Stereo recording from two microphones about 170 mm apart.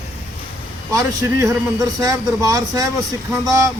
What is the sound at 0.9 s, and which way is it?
Speech, 20° right (ahead or behind).